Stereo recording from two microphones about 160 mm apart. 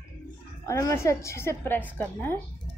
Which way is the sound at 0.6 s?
20° left (ahead or behind).